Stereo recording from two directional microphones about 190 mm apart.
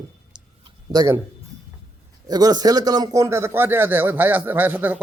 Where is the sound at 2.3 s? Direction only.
20° right (ahead or behind).